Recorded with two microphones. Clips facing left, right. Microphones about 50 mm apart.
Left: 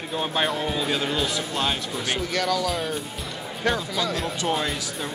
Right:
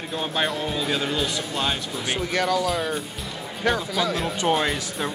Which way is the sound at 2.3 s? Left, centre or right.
Right.